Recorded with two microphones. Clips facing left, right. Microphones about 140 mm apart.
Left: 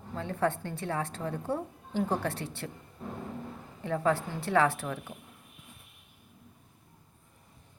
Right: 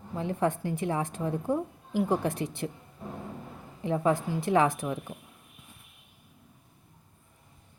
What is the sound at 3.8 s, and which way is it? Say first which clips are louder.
A woman's voice: right 2 dB; 20° right (ahead or behind).